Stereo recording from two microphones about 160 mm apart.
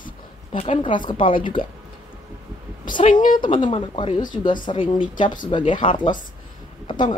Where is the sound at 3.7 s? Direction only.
30° left (ahead or behind).